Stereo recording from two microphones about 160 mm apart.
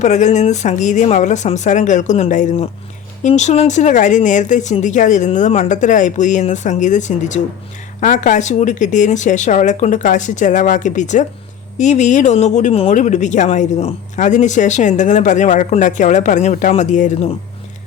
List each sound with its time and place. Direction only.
0.0 s speech: 45° left (ahead or behind)